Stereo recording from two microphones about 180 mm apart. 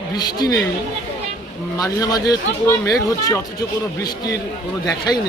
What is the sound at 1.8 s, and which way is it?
Speech, 20° left (ahead or behind).